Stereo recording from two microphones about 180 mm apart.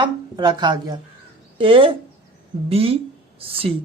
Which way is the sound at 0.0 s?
25° right (ahead or behind).